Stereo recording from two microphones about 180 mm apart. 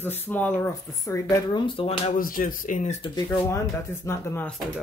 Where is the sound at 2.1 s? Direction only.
50° left (ahead or behind).